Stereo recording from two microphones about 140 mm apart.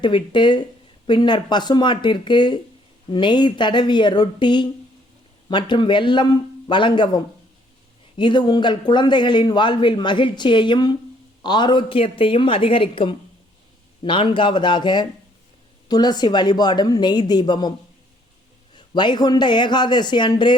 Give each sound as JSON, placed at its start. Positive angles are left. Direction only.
{"t": 0.0, "sound": "a man's voice", "side_deg": 35}
{"t": 18.9, "sound": "a man's voice", "side_deg": 30}